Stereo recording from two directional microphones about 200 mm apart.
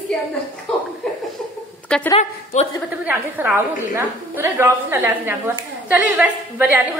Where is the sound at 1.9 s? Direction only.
5° left (ahead or behind).